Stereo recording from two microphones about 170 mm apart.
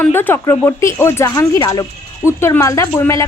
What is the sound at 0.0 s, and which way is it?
Speech, 10° left (ahead or behind).